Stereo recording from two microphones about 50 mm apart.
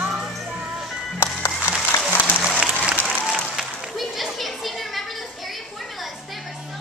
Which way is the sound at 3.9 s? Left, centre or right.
Centre.